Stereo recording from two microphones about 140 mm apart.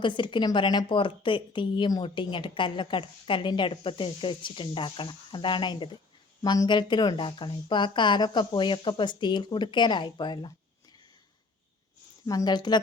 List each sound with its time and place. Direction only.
0.0 s a woman's voice: 35° left (ahead or behind)
12.2 s a woman's voice: 25° left (ahead or behind)